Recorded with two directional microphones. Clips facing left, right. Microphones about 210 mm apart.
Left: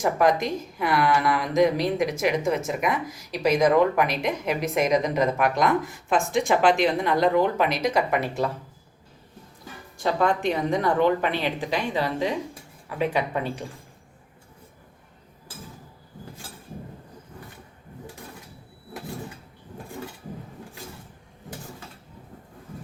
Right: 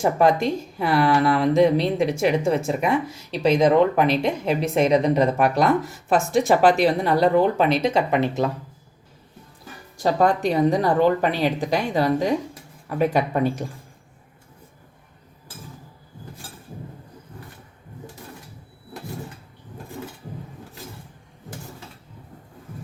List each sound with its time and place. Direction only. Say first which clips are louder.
0.0 s a woman's voice: right 3 dB; 30° right (ahead or behind)
10.0 s a woman's voice: right 4 dB; 40° right (ahead or behind)